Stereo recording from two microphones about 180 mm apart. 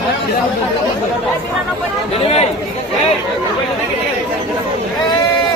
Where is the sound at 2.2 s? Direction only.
35° left (ahead or behind).